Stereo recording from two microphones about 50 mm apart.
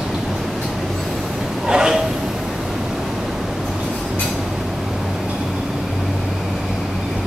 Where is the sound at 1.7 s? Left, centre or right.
Centre.